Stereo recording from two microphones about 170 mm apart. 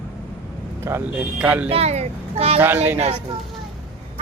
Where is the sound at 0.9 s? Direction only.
15° right (ahead or behind).